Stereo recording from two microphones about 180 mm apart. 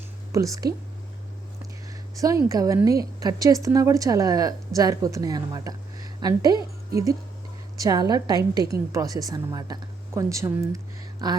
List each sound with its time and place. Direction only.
0.3 s speech: 20° right (ahead or behind)
2.1 s a woman's voice: 20° right (ahead or behind)
7.8 s a woman's voice: 20° right (ahead or behind)